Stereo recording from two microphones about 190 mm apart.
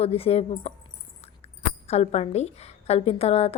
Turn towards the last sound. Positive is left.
turn(degrees=35)  # may be behind; listen again after turning